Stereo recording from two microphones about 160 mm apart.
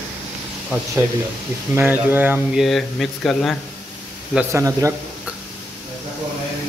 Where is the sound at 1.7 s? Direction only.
15° right (ahead or behind).